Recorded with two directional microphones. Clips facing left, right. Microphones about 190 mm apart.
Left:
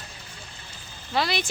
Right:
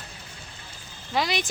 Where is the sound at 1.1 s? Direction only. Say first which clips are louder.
Even; 15° right (ahead or behind).